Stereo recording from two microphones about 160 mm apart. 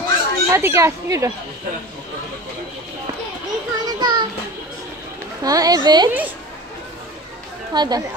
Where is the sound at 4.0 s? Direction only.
30° right (ahead or behind).